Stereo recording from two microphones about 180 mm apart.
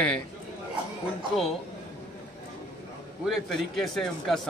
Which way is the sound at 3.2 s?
Centre (ahead or behind).